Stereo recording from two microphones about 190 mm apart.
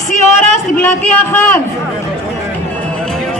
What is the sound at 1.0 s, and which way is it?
Speech, 10° left (ahead or behind).